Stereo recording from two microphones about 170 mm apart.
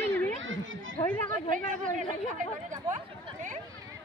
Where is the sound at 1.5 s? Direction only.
50° right (ahead or behind).